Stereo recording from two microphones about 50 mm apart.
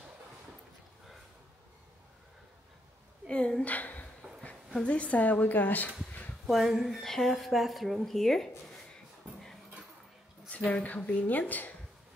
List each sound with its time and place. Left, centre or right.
3.3 s speech: centre
3.6 s a sound: left
4.8 s speech: left
6.4 s speech: centre
10.5 s speech: left